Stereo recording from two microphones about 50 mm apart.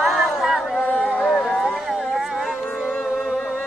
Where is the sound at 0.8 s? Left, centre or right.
Left.